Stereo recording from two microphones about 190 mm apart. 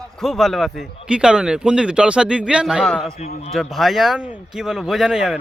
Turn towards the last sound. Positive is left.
turn(degrees=-5)  # may be behind; listen again after turning